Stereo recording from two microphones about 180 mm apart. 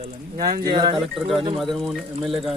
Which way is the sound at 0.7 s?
25° right (ahead or behind).